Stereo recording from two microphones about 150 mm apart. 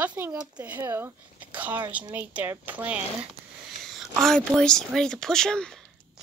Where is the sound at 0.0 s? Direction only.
10° right (ahead or behind).